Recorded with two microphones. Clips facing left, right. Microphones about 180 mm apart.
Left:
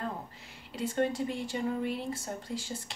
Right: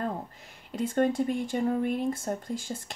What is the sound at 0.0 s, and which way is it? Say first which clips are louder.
Speech: right 5 dB; 50° right (ahead or behind).